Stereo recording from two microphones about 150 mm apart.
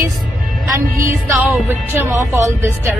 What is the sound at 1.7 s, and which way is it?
A woman's voice, 15° right (ahead or behind).